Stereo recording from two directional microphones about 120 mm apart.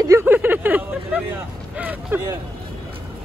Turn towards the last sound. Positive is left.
turn(degrees=-15)  # may be behind; listen again after turning